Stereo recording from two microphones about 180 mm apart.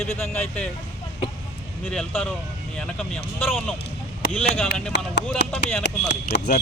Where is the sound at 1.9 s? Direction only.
5° left (ahead or behind).